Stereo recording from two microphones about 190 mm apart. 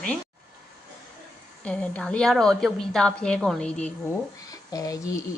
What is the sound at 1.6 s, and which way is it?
A woman's voice, 5° left (ahead or behind).